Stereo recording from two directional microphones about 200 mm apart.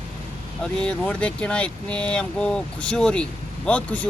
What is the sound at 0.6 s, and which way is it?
Speech, 5° left (ahead or behind).